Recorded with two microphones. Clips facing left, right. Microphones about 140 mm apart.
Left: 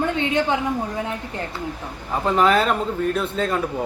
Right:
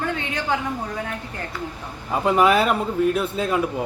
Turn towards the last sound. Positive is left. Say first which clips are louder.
# even
turn(degrees=-10)  # may be behind; listen again after turning